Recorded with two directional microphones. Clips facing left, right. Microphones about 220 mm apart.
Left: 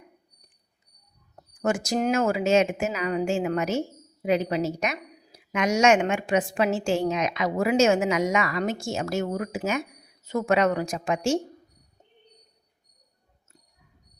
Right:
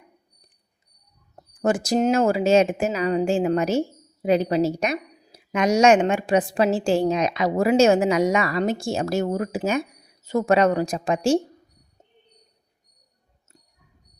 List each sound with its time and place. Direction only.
1.4 s speech: 35° right (ahead or behind)